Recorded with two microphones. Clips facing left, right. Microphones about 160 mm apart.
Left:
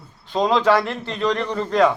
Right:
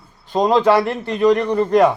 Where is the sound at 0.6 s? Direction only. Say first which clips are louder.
Right 3 dB; 10° right (ahead or behind).